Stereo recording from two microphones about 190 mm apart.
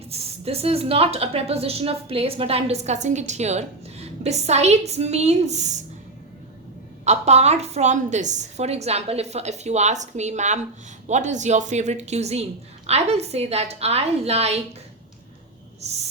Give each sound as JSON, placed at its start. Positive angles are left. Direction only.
{"t": 0.1, "sound": "a woman's voice", "side_deg": -30}
{"t": 7.0, "sound": "a woman's voice", "side_deg": -35}
{"t": 15.8, "sound": "a sound", "side_deg": -35}